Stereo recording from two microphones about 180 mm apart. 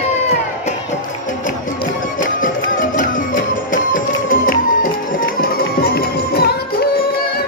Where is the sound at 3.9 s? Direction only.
50° left (ahead or behind).